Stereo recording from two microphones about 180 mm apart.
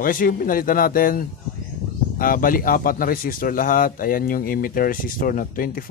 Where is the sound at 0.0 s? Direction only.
50° left (ahead or behind).